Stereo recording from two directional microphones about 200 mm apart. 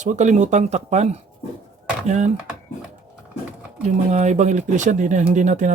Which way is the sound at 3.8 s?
35° right (ahead or behind).